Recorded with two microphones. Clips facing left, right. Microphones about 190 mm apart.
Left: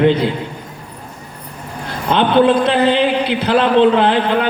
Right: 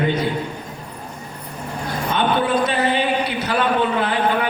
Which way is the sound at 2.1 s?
70° left (ahead or behind).